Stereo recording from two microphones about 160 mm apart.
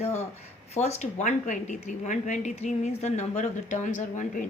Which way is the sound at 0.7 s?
45° left (ahead or behind).